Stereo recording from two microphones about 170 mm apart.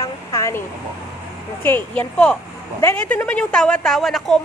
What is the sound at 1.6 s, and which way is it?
A woman's voice, 10° left (ahead or behind).